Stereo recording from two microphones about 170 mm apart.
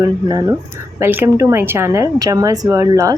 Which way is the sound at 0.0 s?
20° right (ahead or behind).